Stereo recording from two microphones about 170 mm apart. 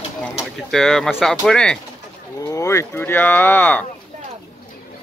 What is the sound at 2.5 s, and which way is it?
Speech, 15° left (ahead or behind).